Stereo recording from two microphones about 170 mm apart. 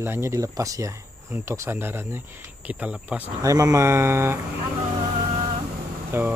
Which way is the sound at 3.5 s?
20° right (ahead or behind).